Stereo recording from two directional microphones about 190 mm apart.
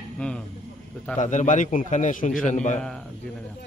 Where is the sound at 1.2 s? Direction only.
40° left (ahead or behind).